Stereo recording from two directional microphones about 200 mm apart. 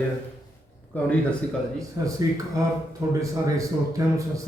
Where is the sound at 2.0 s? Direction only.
15° right (ahead or behind).